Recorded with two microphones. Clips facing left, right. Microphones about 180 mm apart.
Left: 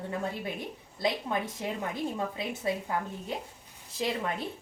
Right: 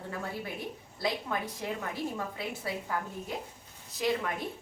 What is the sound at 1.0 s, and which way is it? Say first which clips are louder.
A woman's voice: left 2 dB; 20° left (ahead or behind).